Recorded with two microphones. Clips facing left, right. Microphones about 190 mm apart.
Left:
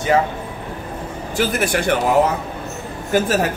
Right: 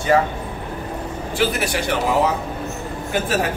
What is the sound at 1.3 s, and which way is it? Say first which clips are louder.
Speech: left 2 dB; 45° left (ahead or behind).